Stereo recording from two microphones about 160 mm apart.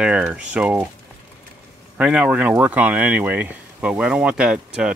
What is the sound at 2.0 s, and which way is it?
Speech, 10° right (ahead or behind).